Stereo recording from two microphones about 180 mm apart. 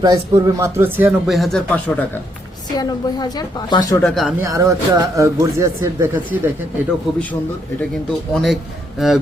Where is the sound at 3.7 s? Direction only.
20° left (ahead or behind).